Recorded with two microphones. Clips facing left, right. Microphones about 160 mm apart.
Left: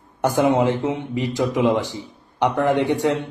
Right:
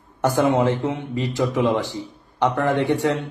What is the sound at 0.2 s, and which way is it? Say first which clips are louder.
A man's voice: left 1 dB; 15° left (ahead or behind).